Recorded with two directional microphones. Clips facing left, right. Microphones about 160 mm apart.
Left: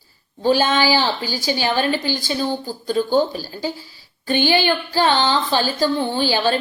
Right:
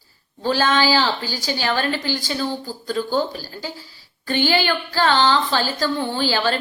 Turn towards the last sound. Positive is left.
turn(degrees=15)  # may be behind; listen again after turning